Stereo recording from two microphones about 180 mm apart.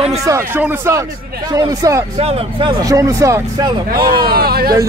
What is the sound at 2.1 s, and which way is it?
Speech, 35° right (ahead or behind).